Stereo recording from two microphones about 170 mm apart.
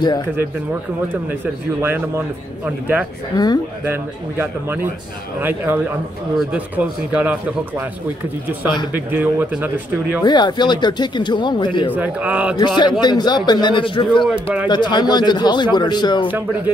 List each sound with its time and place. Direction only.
1.0 s a man's voice: 10° right (ahead or behind)
9.1 s a man's voice: 10° right (ahead or behind)
10.2 s speech: 25° left (ahead or behind)
11.9 s a man's voice: 10° right (ahead or behind)
12.5 s speech: 25° left (ahead or behind)
14.2 s a man's voice: 5° right (ahead or behind)
14.7 s speech: 25° left (ahead or behind)
16.3 s a man's voice: 10° right (ahead or behind)